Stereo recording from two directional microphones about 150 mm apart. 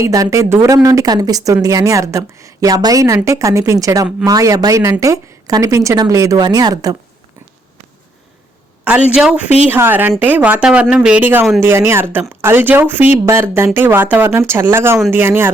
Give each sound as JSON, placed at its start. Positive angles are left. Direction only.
{"t": 0.0, "sound": "speech", "side_deg": -20}
{"t": 9.1, "sound": "speech", "side_deg": -5}